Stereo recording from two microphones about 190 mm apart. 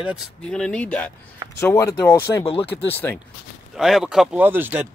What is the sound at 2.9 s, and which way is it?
Speech, 10° left (ahead or behind).